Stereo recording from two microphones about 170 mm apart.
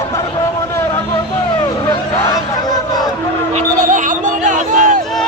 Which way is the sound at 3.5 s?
45° right (ahead or behind).